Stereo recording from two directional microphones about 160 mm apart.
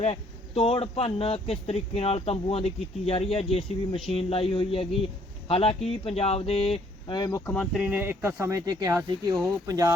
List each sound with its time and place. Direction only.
0.0 s a man's voice: 40° left (ahead or behind)
7.2 s insect: 20° left (ahead or behind)
7.6 s speech: centre (ahead or behind); by 9.9 s 20° right (ahead or behind)